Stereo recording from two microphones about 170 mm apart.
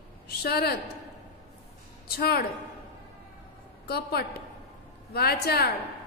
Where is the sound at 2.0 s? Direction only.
70° left (ahead or behind).